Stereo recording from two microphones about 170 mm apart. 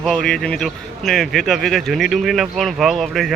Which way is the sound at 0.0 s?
5° left (ahead or behind).